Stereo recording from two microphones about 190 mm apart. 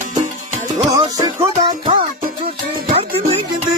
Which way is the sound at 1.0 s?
25° right (ahead or behind).